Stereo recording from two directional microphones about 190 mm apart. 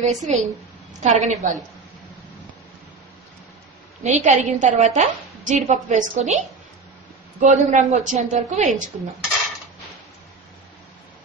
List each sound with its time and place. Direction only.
0.0 s a woman's voice: 40° right (ahead or behind)
4.0 s a woman's voice: 40° right (ahead or behind)